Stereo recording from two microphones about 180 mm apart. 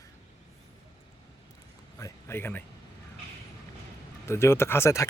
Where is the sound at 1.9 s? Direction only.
15° left (ahead or behind).